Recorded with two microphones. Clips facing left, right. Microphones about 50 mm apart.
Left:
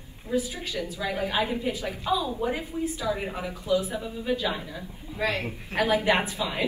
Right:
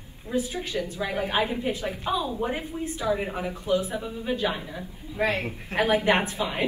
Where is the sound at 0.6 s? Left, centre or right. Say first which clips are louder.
Right 1 dB; right.